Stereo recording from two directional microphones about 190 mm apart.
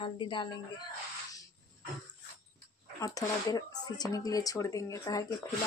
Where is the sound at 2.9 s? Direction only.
20° left (ahead or behind).